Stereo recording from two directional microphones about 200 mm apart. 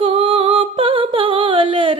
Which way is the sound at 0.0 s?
25° right (ahead or behind).